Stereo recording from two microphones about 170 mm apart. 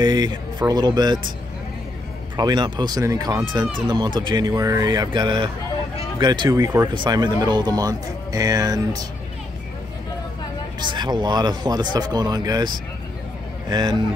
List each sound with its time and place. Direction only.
0.0 s speech: 25° right (ahead or behind)
2.3 s speech: 25° right (ahead or behind)
10.8 s speech: 25° right (ahead or behind)